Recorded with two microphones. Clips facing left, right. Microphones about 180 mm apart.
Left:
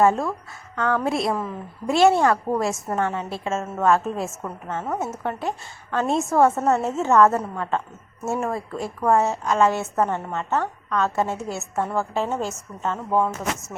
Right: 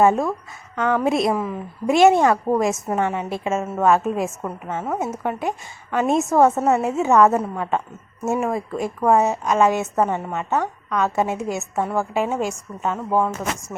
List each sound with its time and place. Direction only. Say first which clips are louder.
0.0 s a woman's voice: right 2 dB; 15° right (ahead or behind)